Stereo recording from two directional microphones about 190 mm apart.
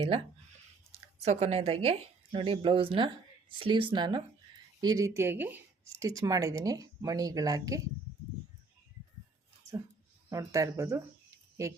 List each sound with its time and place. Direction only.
1.2 s speech: 35° right (ahead or behind); by 7.8 s 20° right (ahead or behind)
10.2 s speech: 15° right (ahead or behind)